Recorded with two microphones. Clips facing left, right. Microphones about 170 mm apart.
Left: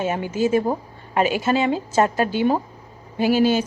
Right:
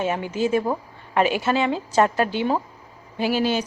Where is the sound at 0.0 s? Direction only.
45° left (ahead or behind).